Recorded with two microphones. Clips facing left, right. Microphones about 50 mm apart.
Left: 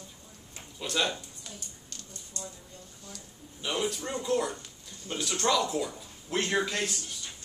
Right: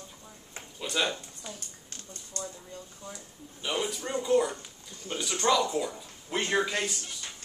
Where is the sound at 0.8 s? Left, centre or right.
Centre.